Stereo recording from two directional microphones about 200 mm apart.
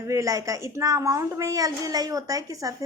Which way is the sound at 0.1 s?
15° right (ahead or behind).